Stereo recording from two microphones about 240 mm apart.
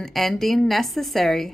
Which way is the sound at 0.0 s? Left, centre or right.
Centre.